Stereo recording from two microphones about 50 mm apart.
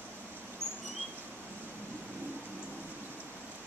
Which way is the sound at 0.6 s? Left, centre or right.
Right.